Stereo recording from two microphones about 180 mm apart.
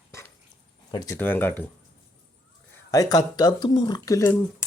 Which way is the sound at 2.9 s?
20° left (ahead or behind).